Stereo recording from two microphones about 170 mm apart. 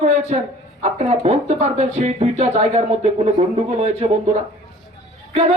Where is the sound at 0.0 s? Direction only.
40° right (ahead or behind).